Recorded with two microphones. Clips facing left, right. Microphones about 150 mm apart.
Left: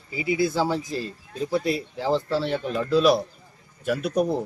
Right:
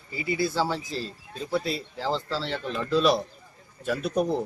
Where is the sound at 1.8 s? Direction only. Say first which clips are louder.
Left 5 dB; 15° left (ahead or behind).